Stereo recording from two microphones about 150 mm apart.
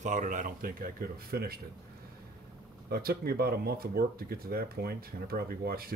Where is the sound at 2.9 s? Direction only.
90° right.